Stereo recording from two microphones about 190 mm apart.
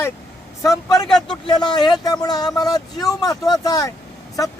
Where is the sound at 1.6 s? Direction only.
25° left (ahead or behind).